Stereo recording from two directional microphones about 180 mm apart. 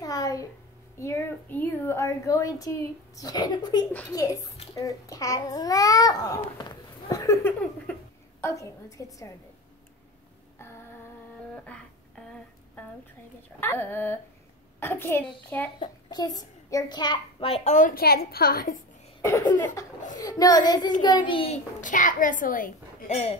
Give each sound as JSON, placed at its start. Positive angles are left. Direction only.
{"t": 0.0, "sound": "a sound", "side_deg": 20}
{"t": 0.9, "sound": "a woman's voice", "side_deg": 15}
{"t": 11.5, "sound": "a sound", "side_deg": 5}
{"t": 13.6, "sound": "a woman's voice", "side_deg": 10}
{"t": 15.8, "sound": "a child's voice", "side_deg": 20}
{"t": 19.2, "sound": "a woman's voice", "side_deg": 15}
{"t": 21.8, "sound": "a child's voice", "side_deg": 45}